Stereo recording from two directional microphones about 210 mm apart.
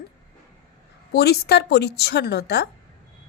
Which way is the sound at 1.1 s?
50° left (ahead or behind).